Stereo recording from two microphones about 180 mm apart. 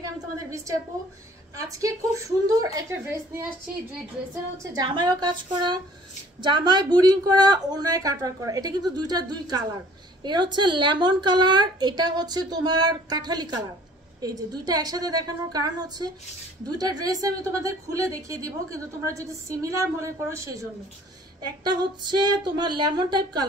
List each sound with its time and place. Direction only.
1.6 s a woman's voice: 20° right (ahead or behind)
4.7 s a woman's voice: 25° right (ahead or behind)
21.6 s speech: 25° right (ahead or behind)